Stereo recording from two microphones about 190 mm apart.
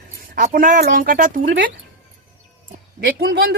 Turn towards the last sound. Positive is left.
turn(degrees=-60)  # may be behind; listen again after turning